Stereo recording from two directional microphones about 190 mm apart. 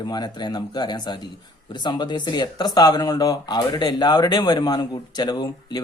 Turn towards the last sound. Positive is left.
turn(degrees=20)  # may be behind; listen again after turning